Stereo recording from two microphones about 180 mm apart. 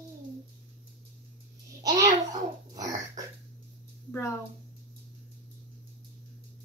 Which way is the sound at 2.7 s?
20° right (ahead or behind).